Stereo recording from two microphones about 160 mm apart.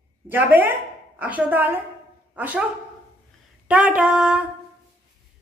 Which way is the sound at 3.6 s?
5° right (ahead or behind).